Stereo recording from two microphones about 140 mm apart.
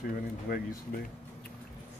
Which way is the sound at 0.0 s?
90° left.